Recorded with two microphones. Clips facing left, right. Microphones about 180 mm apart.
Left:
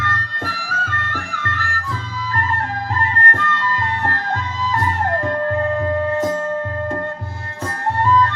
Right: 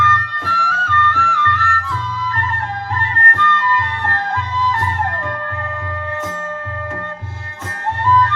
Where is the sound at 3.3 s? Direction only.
40° left (ahead or behind).